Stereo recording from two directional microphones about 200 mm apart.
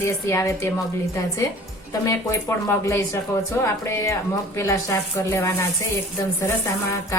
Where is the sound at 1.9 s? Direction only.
15° left (ahead or behind).